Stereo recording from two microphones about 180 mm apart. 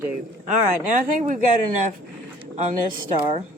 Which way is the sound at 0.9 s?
40° right (ahead or behind).